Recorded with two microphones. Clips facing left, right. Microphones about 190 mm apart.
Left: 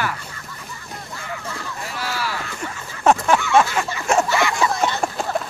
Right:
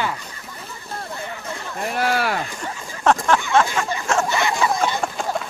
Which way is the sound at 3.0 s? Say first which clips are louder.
Left 1 dB; 10° left (ahead or behind).